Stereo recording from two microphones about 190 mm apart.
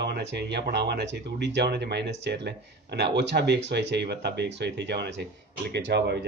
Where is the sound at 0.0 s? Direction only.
65° right (ahead or behind).